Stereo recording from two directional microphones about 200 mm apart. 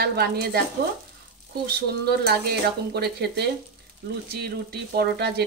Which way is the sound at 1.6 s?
50° right (ahead or behind).